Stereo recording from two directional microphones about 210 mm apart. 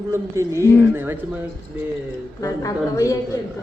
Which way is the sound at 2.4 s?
15° left (ahead or behind).